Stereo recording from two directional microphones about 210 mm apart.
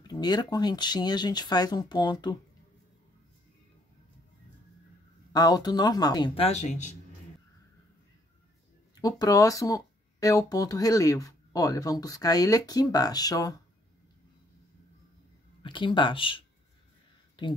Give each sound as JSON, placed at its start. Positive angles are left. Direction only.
{"t": 0.0, "sound": "speech", "side_deg": 20}
{"t": 5.3, "sound": "speech", "side_deg": 20}
{"t": 9.0, "sound": "speech", "side_deg": 15}
{"t": 15.6, "sound": "speech", "side_deg": 25}